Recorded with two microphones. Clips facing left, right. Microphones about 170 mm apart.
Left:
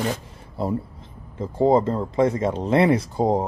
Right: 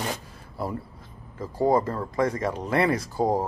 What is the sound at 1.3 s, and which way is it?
Speech, 25° left (ahead or behind).